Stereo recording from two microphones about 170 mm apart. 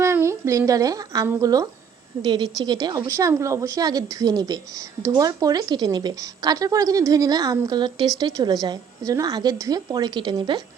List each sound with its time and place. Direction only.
0.0 s a woman's voice: 15° right (ahead or behind)